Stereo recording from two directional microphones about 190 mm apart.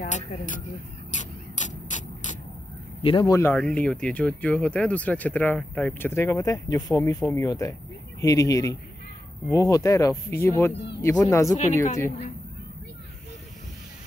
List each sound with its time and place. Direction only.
0.0 s speech: 45° left (ahead or behind)
1.1 s mechanisms: 40° left (ahead or behind)
3.0 s speech: 25° left (ahead or behind)
3.3 s speech: 10° left (ahead or behind)